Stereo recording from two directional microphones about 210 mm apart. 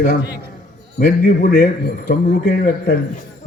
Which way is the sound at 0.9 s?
40° left (ahead or behind).